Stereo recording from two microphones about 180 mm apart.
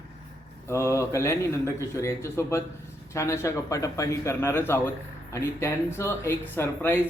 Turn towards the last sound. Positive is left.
turn(degrees=15)  # may be behind; listen again after turning